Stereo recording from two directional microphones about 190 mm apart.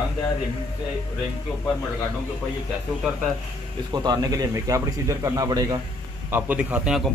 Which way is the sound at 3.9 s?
20° right (ahead or behind).